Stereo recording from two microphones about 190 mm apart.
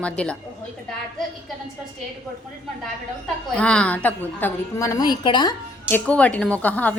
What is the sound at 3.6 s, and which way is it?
A woman's voice, 5° left (ahead or behind).